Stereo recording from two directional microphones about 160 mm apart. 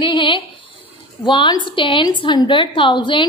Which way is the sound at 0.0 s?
30° left (ahead or behind).